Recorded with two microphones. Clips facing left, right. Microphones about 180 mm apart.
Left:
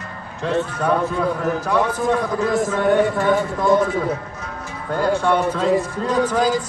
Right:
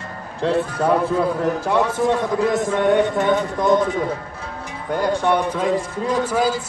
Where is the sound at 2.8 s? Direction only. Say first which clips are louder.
Even; centre (ahead or behind).